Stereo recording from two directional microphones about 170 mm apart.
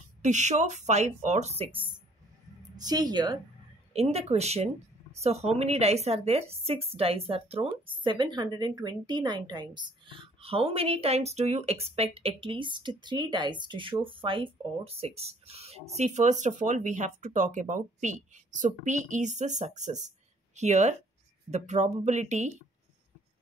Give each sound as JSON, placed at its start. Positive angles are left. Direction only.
{"t": 0.2, "sound": "speech", "side_deg": -45}
{"t": 2.7, "sound": "speech", "side_deg": -25}
{"t": 3.9, "sound": "a woman's voice", "side_deg": -35}